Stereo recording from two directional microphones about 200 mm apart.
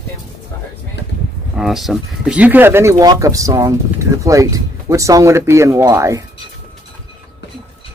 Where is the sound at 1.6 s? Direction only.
Centre (ahead or behind).